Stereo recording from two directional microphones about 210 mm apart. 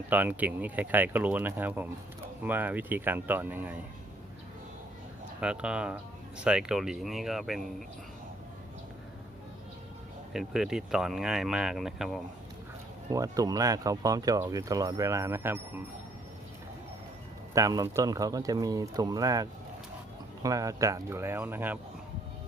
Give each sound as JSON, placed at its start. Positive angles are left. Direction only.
{"t": 0.1, "sound": "speech", "side_deg": -10}
{"t": 5.4, "sound": "speech", "side_deg": -5}
{"t": 10.3, "sound": "speech", "side_deg": 0}
{"t": 13.1, "sound": "speech", "side_deg": -15}
{"t": 17.5, "sound": "speech", "side_deg": -15}